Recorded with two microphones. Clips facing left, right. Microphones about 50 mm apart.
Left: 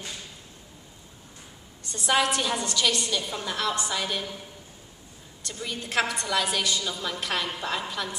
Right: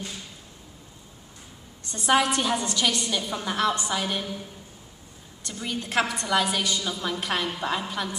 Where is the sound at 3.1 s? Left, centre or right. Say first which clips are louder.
Right 2 dB; centre.